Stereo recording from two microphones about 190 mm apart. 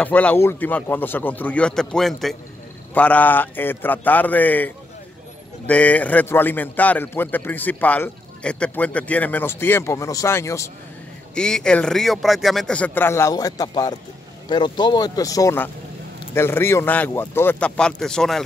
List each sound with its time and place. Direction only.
0.0 s a man's voice: 10° left (ahead or behind)
11.3 s a man's voice: 5° left (ahead or behind)